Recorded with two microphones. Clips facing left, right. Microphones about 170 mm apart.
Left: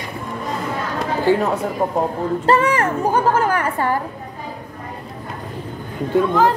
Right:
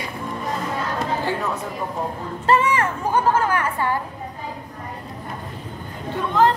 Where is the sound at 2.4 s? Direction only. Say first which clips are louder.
Left 1 dB; 40° left (ahead or behind).